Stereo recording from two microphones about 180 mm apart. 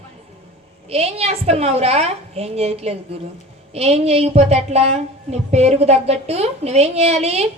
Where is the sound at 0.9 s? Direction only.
35° right (ahead or behind).